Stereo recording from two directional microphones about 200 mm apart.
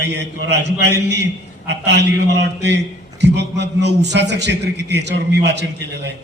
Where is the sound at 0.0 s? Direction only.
60° right (ahead or behind).